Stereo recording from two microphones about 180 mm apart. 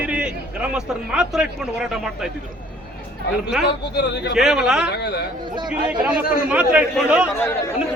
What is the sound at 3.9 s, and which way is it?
Speech, 70° left (ahead or behind).